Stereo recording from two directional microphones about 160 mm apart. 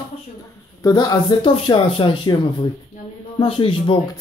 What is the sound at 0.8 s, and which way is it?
Speech, 25° left (ahead or behind).